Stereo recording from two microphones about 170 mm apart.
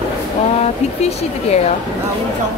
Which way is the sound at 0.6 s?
40° left (ahead or behind).